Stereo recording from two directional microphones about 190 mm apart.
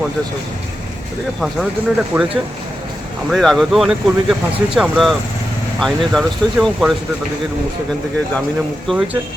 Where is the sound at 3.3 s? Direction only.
Centre (ahead or behind).